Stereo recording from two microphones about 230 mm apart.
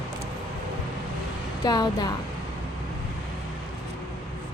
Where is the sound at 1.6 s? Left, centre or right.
Centre.